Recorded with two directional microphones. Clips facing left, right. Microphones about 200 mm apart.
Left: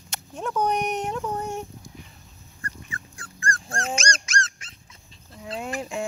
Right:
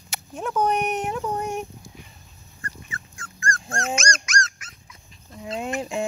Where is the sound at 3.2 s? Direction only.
35° left (ahead or behind).